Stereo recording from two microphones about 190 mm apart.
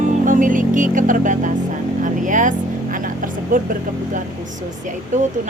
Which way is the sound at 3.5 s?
45° right (ahead or behind).